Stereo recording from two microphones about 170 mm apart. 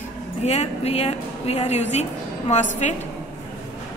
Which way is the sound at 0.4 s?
40° left (ahead or behind).